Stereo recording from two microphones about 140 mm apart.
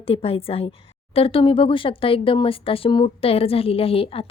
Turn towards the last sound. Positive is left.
turn(degrees=40)  # may be behind; listen again after turning